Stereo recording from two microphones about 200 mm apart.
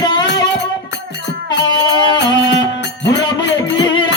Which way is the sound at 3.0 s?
60° left (ahead or behind).